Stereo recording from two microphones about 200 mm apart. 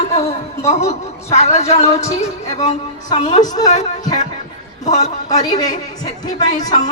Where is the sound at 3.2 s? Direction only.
40° left (ahead or behind).